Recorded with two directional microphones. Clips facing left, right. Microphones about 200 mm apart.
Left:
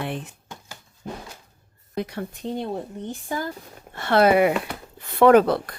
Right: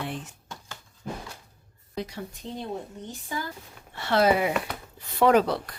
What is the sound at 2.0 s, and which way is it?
Speech, 60° left (ahead or behind).